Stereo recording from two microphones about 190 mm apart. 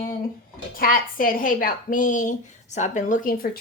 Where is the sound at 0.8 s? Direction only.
45° left (ahead or behind).